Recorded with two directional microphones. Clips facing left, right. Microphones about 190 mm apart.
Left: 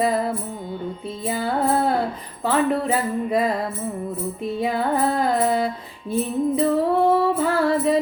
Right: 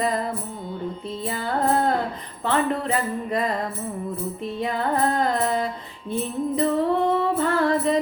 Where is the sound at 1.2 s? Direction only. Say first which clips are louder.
Left 2 dB; 5° left (ahead or behind).